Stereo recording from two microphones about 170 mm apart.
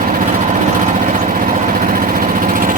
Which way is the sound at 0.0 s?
50° right (ahead or behind).